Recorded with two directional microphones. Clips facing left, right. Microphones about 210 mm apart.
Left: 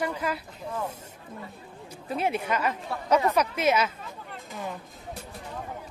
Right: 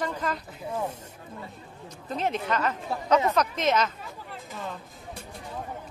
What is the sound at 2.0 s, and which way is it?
Speech, 10° left (ahead or behind).